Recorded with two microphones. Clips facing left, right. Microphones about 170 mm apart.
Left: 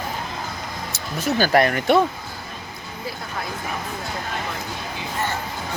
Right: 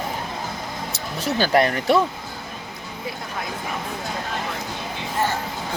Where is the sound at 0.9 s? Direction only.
30° right (ahead or behind).